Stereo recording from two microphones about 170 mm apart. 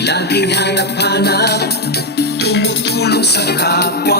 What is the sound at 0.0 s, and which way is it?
Music, 80° left.